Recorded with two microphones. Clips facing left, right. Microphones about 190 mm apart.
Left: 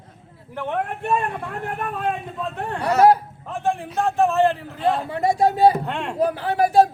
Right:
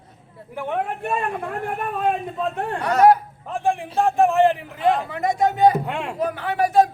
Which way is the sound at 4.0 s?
15° right (ahead or behind).